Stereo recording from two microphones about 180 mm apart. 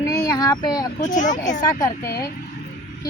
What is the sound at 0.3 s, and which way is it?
Speech, 20° left (ahead or behind).